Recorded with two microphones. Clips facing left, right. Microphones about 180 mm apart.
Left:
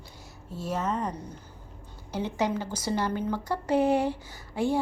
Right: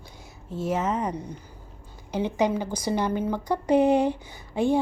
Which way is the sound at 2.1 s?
15° right (ahead or behind).